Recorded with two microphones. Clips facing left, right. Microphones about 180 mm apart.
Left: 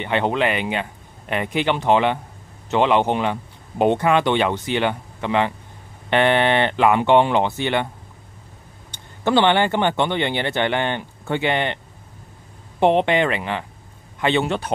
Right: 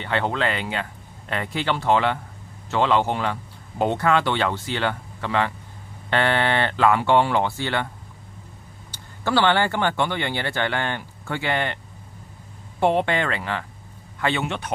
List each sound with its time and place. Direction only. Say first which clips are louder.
0.0 s a man's voice: left 4 dB; 20° left (ahead or behind)
9.2 s a man's voice: left 3 dB; 20° left (ahead or behind)
12.8 s a man's voice: left 4 dB; 20° left (ahead or behind)